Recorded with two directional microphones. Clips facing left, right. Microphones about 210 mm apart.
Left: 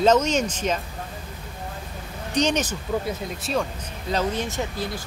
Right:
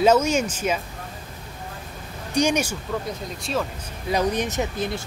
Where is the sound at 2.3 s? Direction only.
10° right (ahead or behind).